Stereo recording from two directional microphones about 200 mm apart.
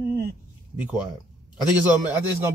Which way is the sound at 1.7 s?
10° right (ahead or behind).